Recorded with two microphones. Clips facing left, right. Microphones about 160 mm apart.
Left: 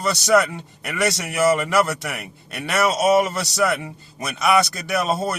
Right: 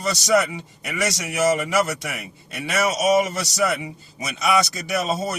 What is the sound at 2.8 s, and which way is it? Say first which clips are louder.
A man's voice: left 2 dB; 60° left (ahead or behind).